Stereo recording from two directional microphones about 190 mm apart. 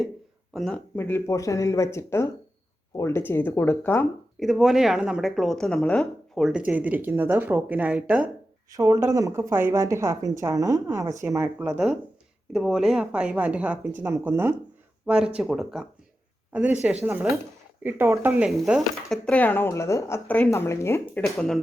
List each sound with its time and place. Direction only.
0.5 s speech: 5° left (ahead or behind)
4.4 s a woman's voice: centre (ahead or behind)